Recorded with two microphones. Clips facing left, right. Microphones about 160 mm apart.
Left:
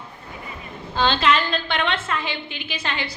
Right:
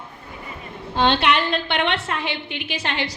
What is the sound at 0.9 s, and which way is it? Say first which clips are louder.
A woman's voice: right 1 dB; 65° right (ahead or behind).